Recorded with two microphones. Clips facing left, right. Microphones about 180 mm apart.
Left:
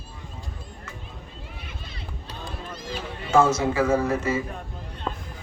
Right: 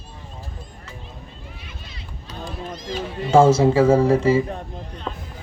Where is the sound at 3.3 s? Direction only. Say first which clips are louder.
Right 6 dB; 30° right (ahead or behind).